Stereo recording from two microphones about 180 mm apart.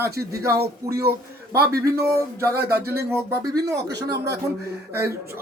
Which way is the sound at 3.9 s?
70° right (ahead or behind).